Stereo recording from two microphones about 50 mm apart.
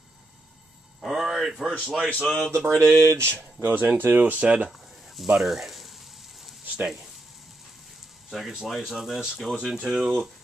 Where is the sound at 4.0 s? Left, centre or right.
Right.